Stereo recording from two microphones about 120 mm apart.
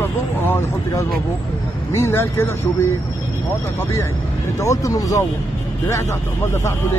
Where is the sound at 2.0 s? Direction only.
20° left (ahead or behind).